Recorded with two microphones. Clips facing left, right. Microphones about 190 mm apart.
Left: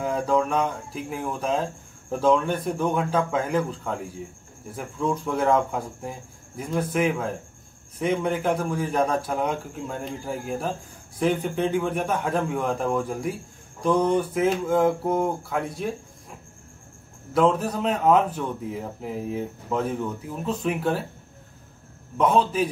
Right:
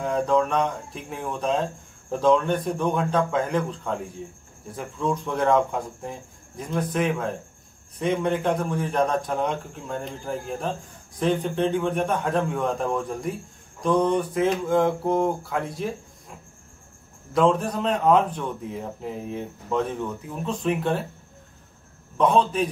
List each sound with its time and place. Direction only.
0.0 s speech: 5° left (ahead or behind)
17.3 s speech: 5° left (ahead or behind)
22.1 s speech: 5° left (ahead or behind)